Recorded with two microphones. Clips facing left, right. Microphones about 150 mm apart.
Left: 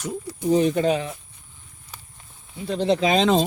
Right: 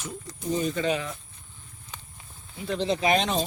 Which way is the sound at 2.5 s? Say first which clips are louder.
Left 3 dB; 30° left (ahead or behind).